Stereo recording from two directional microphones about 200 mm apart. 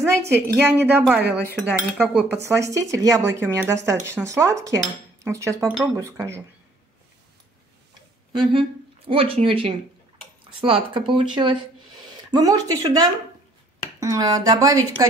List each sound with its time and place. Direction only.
0.3 s speech: 10° right (ahead or behind)
8.3 s speech: 25° right (ahead or behind)